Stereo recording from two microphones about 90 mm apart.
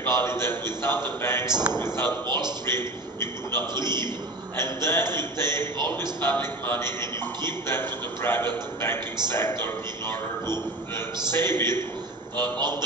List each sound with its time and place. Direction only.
0.0 s a man's voice: 30° left (ahead or behind)
2.2 s a man's voice: 55° right (ahead or behind)
2.6 s a man's voice: 25° left (ahead or behind)